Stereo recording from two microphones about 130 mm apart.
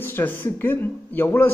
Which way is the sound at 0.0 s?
15° left (ahead or behind).